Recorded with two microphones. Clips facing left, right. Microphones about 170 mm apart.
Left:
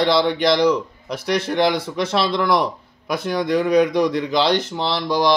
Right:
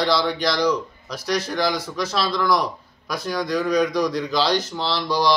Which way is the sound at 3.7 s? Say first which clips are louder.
Left 4 dB; 55° left (ahead or behind).